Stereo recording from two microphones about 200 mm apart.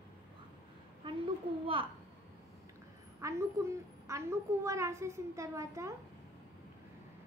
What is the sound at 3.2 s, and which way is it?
A woman's voice, 15° right (ahead or behind).